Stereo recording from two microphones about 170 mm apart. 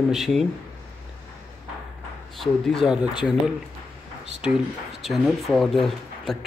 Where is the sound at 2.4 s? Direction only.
Centre (ahead or behind).